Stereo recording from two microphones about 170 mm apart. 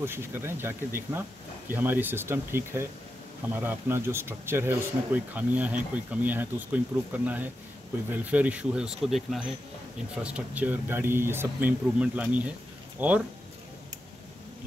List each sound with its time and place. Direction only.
0.0 s speech: 15° right (ahead or behind)